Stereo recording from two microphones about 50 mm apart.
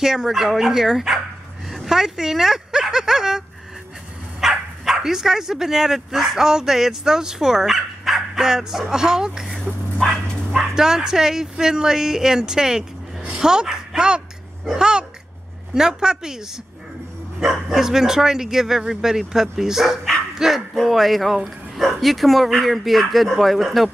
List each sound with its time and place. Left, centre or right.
0.0 s speech: centre
10.0 s bow-wow: centre
10.5 s speech: centre
17.5 s speech: centre